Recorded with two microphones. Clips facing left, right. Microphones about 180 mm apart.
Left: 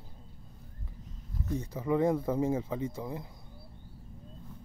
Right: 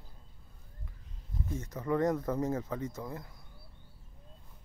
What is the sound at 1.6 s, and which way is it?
Speech, 10° left (ahead or behind).